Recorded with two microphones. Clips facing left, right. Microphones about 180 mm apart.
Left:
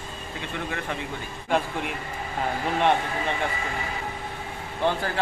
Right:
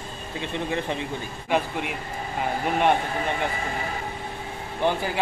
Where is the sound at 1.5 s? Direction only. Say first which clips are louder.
Right 1 dB; 5° right (ahead or behind).